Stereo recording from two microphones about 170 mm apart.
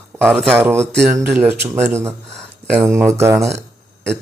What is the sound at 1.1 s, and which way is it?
Speech, 10° right (ahead or behind).